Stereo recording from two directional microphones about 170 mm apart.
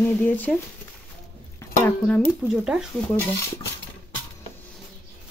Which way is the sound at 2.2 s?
5° right (ahead or behind).